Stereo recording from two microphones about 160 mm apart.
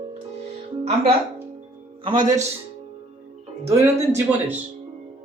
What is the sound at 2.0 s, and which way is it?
Speech, 25° right (ahead or behind).